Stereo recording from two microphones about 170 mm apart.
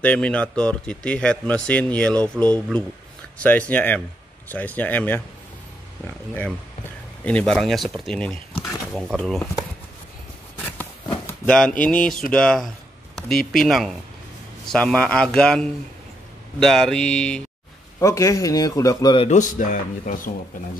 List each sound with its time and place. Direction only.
0.0 s speech: 5° left (ahead or behind)
11.2 s speech: 5° left (ahead or behind)
17.9 s a man's voice: 20° left (ahead or behind)
19.2 s speech: 45° left (ahead or behind)